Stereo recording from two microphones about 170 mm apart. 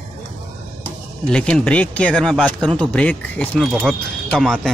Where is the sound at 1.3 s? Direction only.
5° left (ahead or behind).